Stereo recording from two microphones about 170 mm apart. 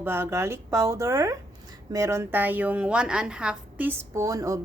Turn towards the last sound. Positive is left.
turn(degrees=-20)  # may be behind; listen again after turning